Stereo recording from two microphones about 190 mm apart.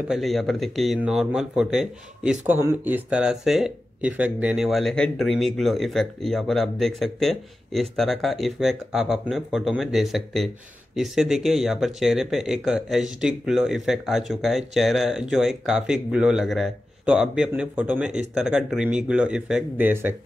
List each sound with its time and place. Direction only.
0.1 s speech: centre (ahead or behind)